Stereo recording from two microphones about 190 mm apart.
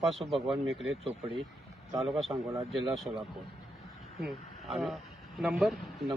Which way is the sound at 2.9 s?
Centre (ahead or behind).